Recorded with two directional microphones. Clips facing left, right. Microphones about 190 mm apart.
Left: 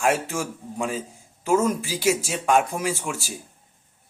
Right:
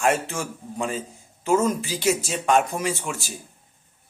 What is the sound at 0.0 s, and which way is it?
A man's voice, 5° left (ahead or behind).